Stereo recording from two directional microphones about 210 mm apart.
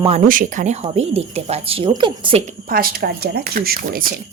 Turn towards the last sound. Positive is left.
turn(degrees=-40)  # may be behind; listen again after turning